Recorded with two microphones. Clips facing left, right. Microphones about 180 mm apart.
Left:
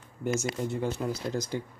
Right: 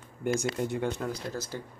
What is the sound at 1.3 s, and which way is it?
Speech, 20° left (ahead or behind).